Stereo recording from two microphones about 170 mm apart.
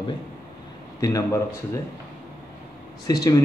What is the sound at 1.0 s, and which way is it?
Speech, 20° left (ahead or behind).